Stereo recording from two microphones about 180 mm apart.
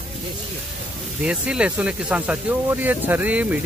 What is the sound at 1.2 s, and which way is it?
Speech, 5° right (ahead or behind).